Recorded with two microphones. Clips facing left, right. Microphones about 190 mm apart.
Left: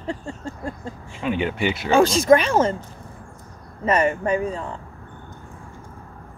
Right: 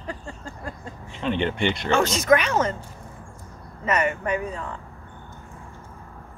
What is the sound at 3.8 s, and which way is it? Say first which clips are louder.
Speech: left 4 dB; 30° left (ahead or behind).